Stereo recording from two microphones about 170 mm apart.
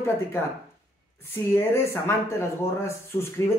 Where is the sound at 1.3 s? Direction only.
15° left (ahead or behind).